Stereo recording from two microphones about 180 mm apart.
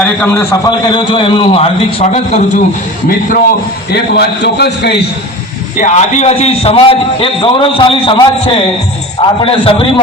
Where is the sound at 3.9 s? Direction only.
65° left (ahead or behind).